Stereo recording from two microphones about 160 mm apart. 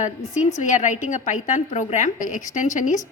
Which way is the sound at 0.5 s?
50° left (ahead or behind).